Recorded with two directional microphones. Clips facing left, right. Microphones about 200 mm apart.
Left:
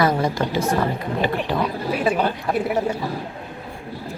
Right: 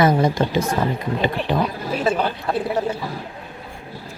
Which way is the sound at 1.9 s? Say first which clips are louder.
Left 1 dB; 10° left (ahead or behind).